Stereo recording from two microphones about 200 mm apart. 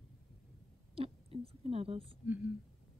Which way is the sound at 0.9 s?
30° right (ahead or behind).